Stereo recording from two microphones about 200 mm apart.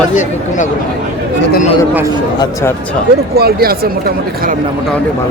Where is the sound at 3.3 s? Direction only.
50° right (ahead or behind).